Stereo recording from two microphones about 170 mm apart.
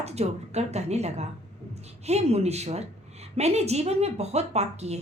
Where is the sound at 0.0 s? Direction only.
40° right (ahead or behind).